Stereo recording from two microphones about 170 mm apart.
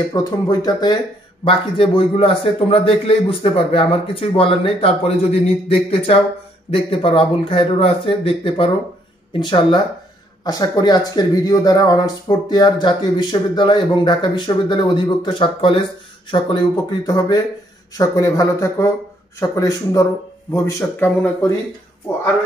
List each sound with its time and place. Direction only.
0.1 s a man's voice: 20° left (ahead or behind)